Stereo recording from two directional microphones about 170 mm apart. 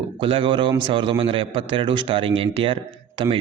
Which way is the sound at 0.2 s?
30° right (ahead or behind).